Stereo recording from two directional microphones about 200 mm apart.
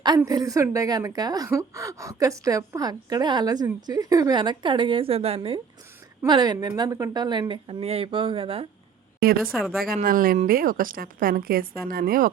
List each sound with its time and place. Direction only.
0.2 s a woman's voice: 15° right (ahead or behind)
9.4 s speech: centre (ahead or behind)
9.8 s a woman's voice: 45° right (ahead or behind)